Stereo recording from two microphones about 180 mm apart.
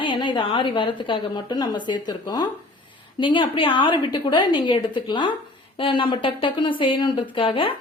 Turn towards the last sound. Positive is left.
turn(degrees=30)  # may be behind; listen again after turning